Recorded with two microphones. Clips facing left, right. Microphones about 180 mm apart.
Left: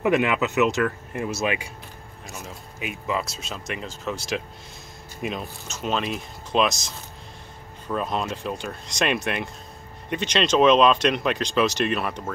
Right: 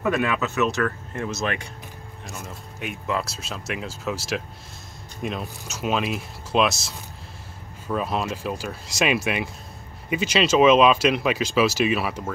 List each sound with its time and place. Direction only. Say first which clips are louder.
0.0 s speech: left 2 dB; 20° left (ahead or behind); by 6.8 s 5° right (ahead or behind)
7.9 s speech: right 1 dB; 5° right (ahead or behind)